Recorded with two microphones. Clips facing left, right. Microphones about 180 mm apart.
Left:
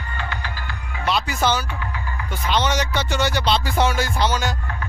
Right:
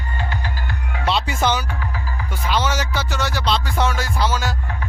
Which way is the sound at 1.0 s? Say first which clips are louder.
Right 1 dB; 25° right (ahead or behind).